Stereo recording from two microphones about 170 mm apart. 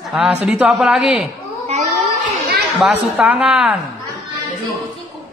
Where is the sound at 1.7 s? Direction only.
40° right (ahead or behind).